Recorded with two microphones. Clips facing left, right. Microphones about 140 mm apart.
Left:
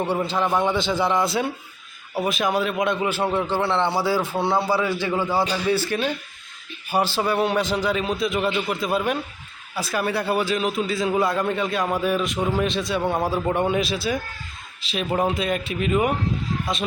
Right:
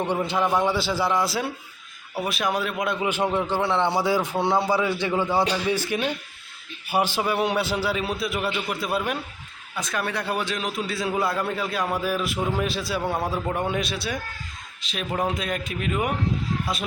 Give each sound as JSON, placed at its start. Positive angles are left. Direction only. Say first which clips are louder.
{"t": 0.0, "sound": "a man's voice", "louder": "left 1 dB", "side_deg": 10}
{"t": 0.3, "sound": "a man's voice", "louder": "left 1 dB", "side_deg": -10}